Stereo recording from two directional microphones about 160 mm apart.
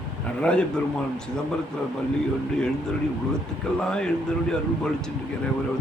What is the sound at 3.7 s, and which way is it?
Speech, 5° left (ahead or behind).